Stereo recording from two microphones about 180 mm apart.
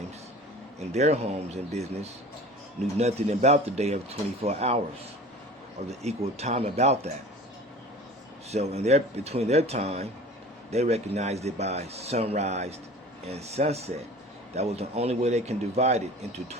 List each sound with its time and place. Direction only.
0.8 s a man's voice: 40° right (ahead or behind)
5.9 s a man's voice: 35° right (ahead or behind)
8.4 s a man's voice: 35° right (ahead or behind)